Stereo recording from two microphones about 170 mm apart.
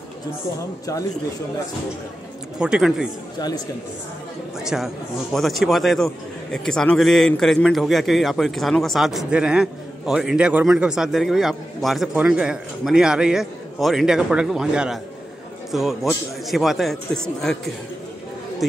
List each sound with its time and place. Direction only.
2.6 s a man's voice: 5° right (ahead or behind)
3.3 s speech: 25° left (ahead or behind)
4.6 s a man's voice: 5° right (ahead or behind)